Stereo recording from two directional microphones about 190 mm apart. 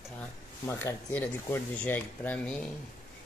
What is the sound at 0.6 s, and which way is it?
Speech, 10° left (ahead or behind).